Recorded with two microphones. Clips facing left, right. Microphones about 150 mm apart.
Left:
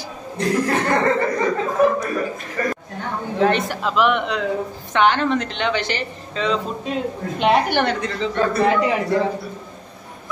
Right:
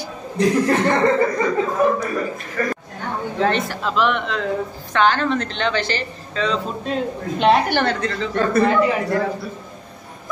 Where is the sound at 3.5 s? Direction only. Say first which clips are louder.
Left 1 dB; 15° left (ahead or behind).